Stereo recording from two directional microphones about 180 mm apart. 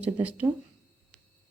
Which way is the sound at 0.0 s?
10° right (ahead or behind).